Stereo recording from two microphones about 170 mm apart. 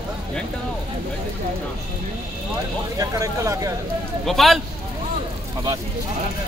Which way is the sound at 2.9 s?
20° right (ahead or behind).